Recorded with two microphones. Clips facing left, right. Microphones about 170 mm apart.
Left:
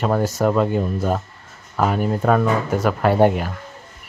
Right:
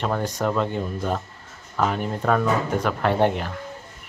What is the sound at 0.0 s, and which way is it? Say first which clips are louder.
Speech: left 5 dB; 5° left (ahead or behind).